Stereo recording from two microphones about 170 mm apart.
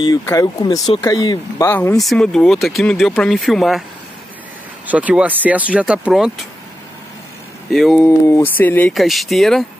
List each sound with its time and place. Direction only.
0.2 s speech: 20° left (ahead or behind)
1.7 s speech: 15° left (ahead or behind)
4.8 s speech: 10° right (ahead or behind)
7.7 s speech: centre (ahead or behind)
8.3 s speech: 10° left (ahead or behind)
8.9 s speech: centre (ahead or behind)